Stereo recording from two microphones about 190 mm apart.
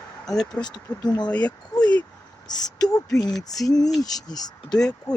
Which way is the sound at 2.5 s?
20° left (ahead or behind).